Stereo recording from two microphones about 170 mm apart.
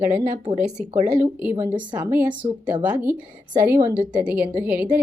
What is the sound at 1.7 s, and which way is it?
Speech, 25° right (ahead or behind).